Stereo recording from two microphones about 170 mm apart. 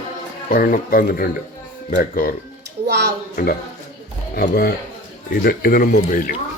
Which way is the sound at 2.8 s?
80° right.